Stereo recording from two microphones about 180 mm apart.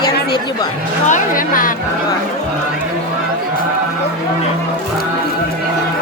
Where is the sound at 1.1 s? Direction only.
50° left (ahead or behind).